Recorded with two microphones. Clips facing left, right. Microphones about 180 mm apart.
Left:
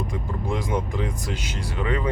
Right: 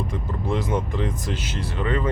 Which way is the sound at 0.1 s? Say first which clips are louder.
Right 2 dB; 10° left (ahead or behind).